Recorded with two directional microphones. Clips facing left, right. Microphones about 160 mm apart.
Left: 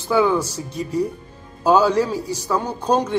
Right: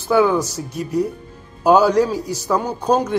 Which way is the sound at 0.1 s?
10° right (ahead or behind).